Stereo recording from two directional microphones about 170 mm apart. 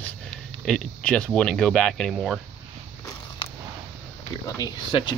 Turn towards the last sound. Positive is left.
turn(degrees=25)  # may be behind; listen again after turning